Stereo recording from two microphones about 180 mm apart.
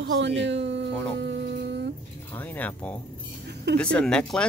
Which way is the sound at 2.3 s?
10° left (ahead or behind).